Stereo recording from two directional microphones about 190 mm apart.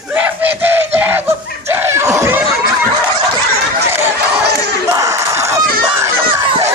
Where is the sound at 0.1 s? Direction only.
10° right (ahead or behind).